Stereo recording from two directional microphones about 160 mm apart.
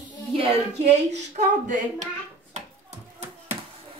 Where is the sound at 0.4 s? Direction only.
45° right (ahead or behind).